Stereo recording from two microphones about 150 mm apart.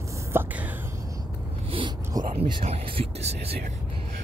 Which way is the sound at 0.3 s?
10° right (ahead or behind).